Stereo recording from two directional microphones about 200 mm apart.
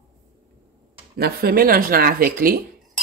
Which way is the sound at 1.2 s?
50° right (ahead or behind).